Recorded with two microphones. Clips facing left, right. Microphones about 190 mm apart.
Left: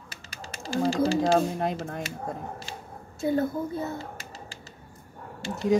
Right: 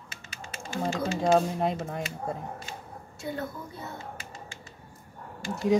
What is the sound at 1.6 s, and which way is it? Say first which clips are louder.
Speech: even; centre (ahead or behind).